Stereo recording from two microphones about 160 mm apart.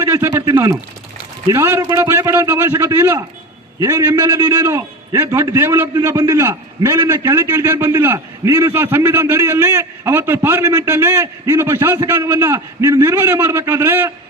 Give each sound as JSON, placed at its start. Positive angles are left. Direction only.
{"t": 0.0, "sound": "speech", "side_deg": -15}
{"t": 0.5, "sound": "speech", "side_deg": -25}
{"t": 1.5, "sound": "a man's voice", "side_deg": -15}